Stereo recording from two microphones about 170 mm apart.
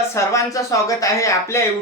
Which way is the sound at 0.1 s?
20° left (ahead or behind).